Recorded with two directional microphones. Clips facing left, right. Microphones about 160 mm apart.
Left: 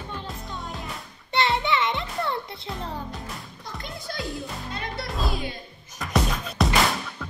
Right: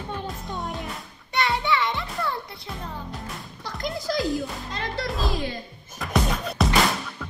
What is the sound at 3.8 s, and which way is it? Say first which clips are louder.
Music: right 9 dB; 90° right.